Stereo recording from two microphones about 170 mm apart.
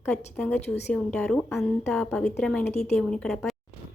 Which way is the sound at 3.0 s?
5° left (ahead or behind).